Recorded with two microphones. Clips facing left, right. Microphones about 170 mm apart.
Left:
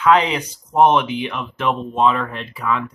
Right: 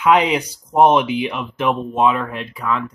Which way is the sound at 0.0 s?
10° right (ahead or behind).